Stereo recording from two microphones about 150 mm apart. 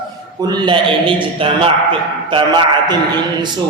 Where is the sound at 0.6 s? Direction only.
35° right (ahead or behind).